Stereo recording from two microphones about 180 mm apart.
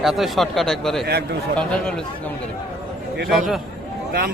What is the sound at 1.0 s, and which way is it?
Speech, 65° right (ahead or behind).